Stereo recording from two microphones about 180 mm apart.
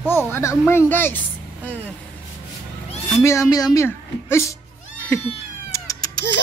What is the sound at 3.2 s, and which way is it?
A woman's voice, 20° left (ahead or behind).